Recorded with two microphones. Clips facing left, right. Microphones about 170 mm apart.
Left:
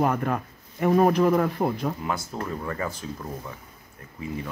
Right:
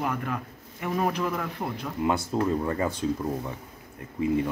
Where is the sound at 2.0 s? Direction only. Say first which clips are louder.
Right 5 dB; 20° right (ahead or behind).